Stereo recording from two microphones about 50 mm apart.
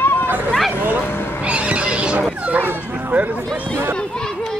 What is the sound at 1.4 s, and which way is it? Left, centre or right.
Neigh, right.